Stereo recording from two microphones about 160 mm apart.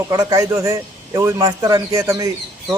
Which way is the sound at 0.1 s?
20° right (ahead or behind).